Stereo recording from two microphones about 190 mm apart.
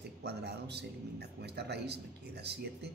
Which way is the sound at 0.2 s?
60° right (ahead or behind).